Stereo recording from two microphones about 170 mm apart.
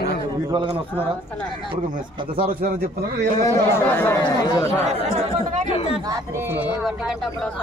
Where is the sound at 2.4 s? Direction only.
60° right (ahead or behind).